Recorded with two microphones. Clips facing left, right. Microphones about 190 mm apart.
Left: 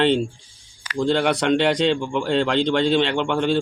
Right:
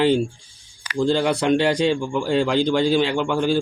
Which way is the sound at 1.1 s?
70° left (ahead or behind).